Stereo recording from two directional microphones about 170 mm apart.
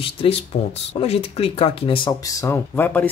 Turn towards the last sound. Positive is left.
turn(degrees=10)  # may be behind; listen again after turning